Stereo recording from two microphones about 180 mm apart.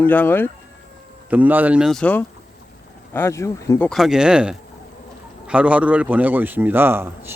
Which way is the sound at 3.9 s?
Centre (ahead or behind).